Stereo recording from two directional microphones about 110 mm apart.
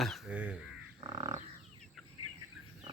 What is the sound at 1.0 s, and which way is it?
Frog, 40° right (ahead or behind).